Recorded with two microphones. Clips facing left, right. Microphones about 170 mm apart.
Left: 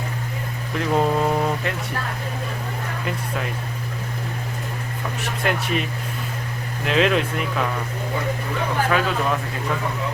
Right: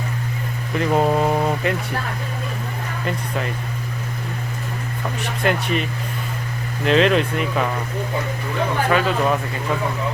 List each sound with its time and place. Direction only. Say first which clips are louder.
0.8 s vehicle: right 2 dB; 5° right (ahead or behind)
5.2 s speech: right 3 dB; centre (ahead or behind)
8.9 s speech: right 4 dB; centre (ahead or behind)